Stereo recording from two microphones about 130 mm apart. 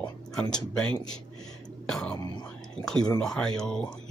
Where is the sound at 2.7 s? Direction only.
5° left (ahead or behind).